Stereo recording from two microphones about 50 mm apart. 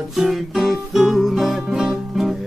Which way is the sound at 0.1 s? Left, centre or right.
Centre.